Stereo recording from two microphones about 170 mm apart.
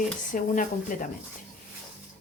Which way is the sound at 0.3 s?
50° left (ahead or behind).